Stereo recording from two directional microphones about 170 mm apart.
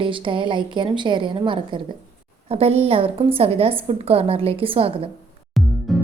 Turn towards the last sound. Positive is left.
turn(degrees=0)  # may be behind; listen again after turning